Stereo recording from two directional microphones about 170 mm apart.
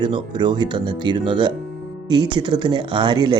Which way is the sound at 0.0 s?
25° right (ahead or behind).